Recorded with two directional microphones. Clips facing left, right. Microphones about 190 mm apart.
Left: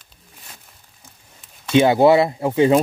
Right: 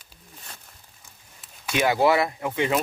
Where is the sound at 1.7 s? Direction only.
25° left (ahead or behind).